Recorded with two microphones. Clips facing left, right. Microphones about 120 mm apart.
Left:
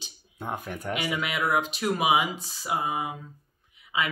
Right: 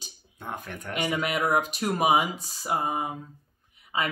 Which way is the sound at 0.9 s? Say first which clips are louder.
Right 3 dB; 45° right (ahead or behind).